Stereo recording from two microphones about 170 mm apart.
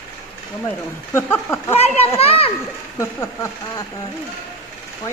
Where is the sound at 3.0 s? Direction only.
15° left (ahead or behind).